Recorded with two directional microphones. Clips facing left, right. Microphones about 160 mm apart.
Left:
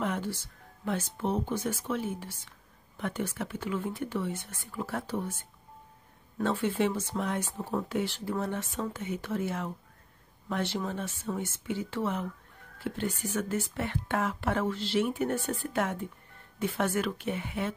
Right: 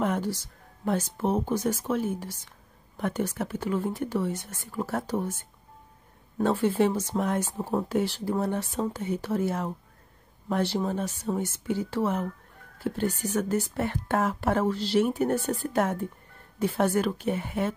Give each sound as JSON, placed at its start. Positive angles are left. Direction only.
{"t": 0.0, "sound": "speech", "side_deg": -40}